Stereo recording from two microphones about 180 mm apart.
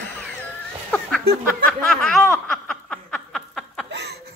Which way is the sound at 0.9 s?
5° left (ahead or behind).